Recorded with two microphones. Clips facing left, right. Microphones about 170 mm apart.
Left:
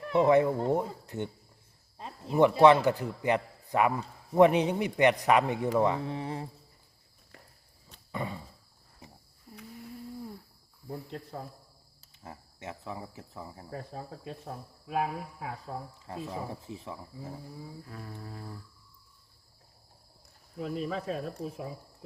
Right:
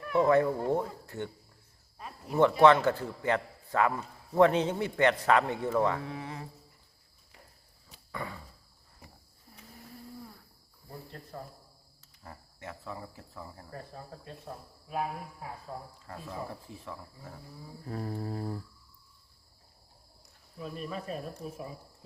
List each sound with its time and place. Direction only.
0.0 s speech: 20° left (ahead or behind)
2.0 s a sound: 25° left (ahead or behind)
2.4 s a man's voice: 15° left (ahead or behind)
6.1 s speech: 30° left (ahead or behind)
8.1 s a sound: 20° left (ahead or behind)
12.2 s speech: 20° left (ahead or behind)
14.8 s speech: 90° left
16.0 s speech: 20° left (ahead or behind)
17.8 s a sound: 40° right (ahead or behind)
20.6 s speech: 90° left